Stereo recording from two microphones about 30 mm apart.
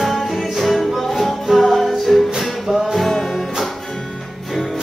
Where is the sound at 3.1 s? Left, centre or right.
Centre.